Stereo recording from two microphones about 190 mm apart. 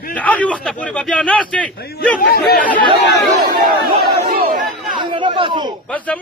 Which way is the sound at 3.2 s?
55° right (ahead or behind).